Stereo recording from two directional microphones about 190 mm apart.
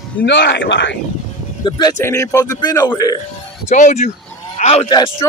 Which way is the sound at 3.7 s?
40° left (ahead or behind).